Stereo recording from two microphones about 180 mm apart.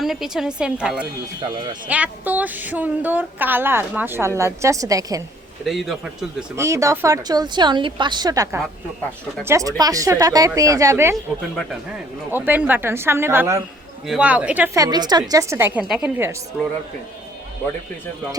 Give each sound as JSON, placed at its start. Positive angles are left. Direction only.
{"t": 0.0, "sound": "a woman's voice", "side_deg": 0}
{"t": 5.6, "sound": "a woman's voice", "side_deg": 0}
{"t": 6.6, "sound": "a woman's voice", "side_deg": -15}
{"t": 12.3, "sound": "a woman's voice", "side_deg": -10}